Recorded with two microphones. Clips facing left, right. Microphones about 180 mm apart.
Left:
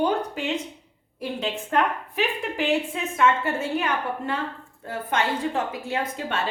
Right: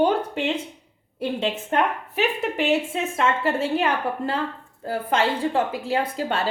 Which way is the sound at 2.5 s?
25° right (ahead or behind).